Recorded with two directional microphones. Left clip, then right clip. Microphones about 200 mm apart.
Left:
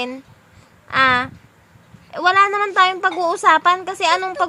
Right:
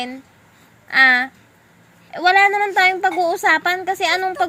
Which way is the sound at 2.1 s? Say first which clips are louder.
Right 1 dB; 20° left (ahead or behind).